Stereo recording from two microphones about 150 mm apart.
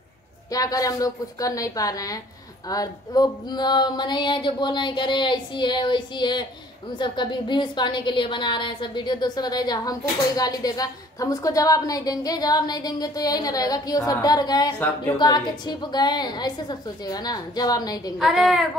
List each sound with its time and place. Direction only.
0.5 s a woman's voice: 25° left (ahead or behind)
18.2 s a woman's voice: centre (ahead or behind)